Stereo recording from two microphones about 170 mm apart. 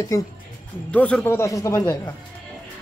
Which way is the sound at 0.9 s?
10° left (ahead or behind).